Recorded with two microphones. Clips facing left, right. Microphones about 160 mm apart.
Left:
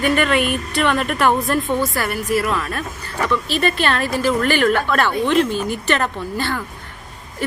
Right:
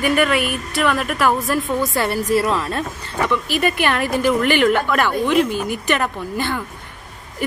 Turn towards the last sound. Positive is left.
turn(degrees=-15)  # may be behind; listen again after turning